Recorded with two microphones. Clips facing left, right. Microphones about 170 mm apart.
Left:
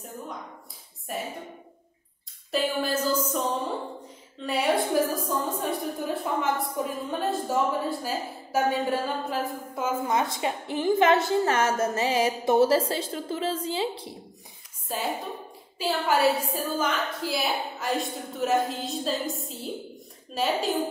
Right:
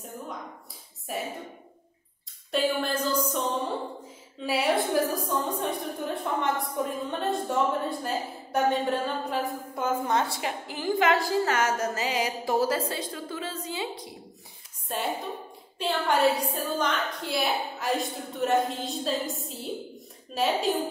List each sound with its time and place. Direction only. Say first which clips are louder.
1.1 s a woman's voice: even; centre (ahead or behind)
2.5 s a woman's voice: even; 5° left (ahead or behind)
10.0 s a woman's voice: left 1 dB; 15° left (ahead or behind); by 14.0 s 30° left (ahead or behind)
14.9 s a woman's voice: even; centre (ahead or behind)